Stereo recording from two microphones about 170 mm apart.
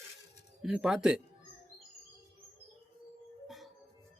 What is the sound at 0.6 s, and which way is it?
Speech, 5° right (ahead or behind).